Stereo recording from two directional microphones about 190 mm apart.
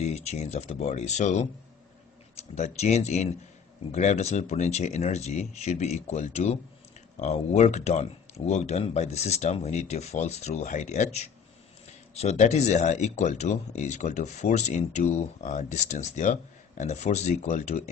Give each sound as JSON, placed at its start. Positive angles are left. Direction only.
{"t": 0.1, "sound": "speech", "side_deg": 35}
{"t": 2.5, "sound": "speech", "side_deg": 35}